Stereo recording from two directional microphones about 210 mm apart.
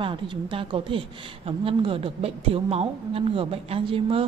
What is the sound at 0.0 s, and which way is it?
Speech, 25° right (ahead or behind).